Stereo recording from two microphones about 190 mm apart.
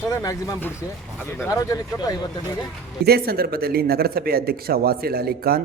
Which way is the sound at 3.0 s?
55° right (ahead or behind).